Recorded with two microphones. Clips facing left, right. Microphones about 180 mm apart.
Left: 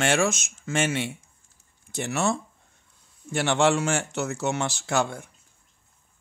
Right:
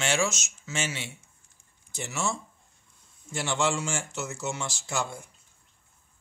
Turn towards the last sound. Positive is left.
turn(degrees=65)  # may be behind; listen again after turning